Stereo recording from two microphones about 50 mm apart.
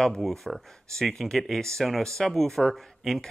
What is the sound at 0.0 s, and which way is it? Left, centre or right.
Speech, centre.